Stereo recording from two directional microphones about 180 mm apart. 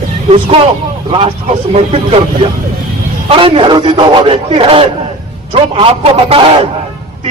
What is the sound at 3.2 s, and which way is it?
A man's voice, 30° right (ahead or behind).